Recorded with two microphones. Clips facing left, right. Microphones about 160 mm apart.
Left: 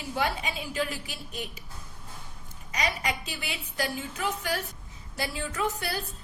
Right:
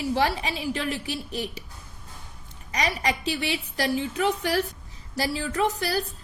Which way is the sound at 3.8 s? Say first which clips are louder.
Right 6 dB; 75° right (ahead or behind).